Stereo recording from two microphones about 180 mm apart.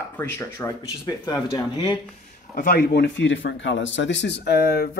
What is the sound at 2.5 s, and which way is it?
Speech, 55° left (ahead or behind).